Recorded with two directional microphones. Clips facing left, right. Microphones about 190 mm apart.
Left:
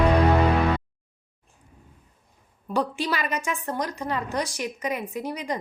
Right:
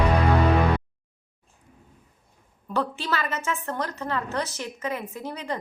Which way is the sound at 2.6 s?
15° left (ahead or behind).